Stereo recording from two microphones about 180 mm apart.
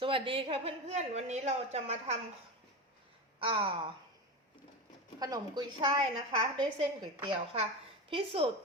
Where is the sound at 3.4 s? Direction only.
25° right (ahead or behind).